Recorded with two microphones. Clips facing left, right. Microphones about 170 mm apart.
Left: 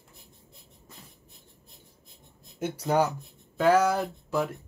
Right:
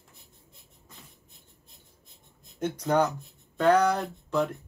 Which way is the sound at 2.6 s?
10° left (ahead or behind).